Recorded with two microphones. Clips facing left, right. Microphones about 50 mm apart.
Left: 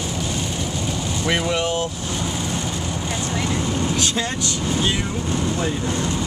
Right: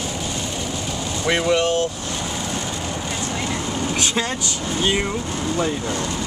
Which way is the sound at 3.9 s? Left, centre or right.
Right.